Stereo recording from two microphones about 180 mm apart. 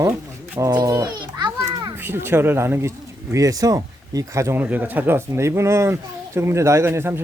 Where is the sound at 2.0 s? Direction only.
10° right (ahead or behind).